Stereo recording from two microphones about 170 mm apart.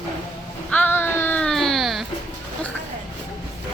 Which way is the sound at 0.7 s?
10° left (ahead or behind).